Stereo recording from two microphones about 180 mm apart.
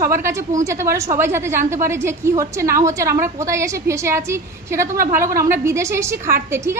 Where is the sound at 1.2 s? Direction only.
15° right (ahead or behind).